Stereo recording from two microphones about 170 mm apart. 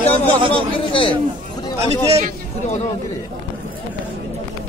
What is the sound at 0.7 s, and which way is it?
Speech, 30° left (ahead or behind).